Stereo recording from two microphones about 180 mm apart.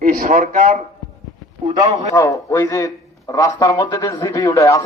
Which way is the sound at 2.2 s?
15° left (ahead or behind).